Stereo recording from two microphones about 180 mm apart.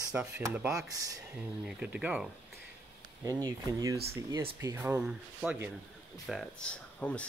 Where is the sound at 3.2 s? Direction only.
20° right (ahead or behind).